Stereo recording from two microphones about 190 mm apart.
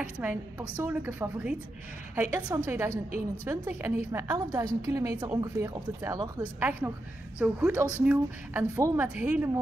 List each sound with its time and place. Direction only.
0.2 s a woman's voice: 10° right (ahead or behind)